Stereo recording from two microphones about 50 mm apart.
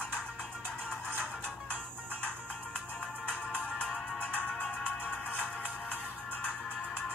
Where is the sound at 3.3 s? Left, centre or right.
Left.